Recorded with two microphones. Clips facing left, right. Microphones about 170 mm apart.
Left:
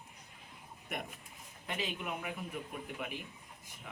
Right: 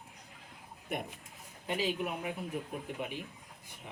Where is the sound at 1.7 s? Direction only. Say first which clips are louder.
Right 5 dB; 30° right (ahead or behind).